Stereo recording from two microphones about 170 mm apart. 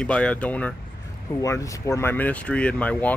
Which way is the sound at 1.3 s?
20° left (ahead or behind).